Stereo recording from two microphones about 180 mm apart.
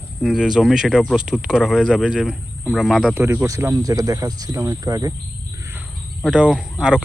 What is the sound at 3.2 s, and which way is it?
Speech, 15° right (ahead or behind).